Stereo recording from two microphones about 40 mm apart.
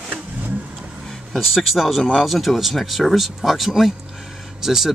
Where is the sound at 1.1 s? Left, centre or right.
Centre.